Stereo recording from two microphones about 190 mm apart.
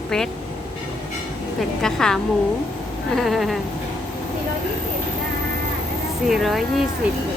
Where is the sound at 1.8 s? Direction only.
5° left (ahead or behind).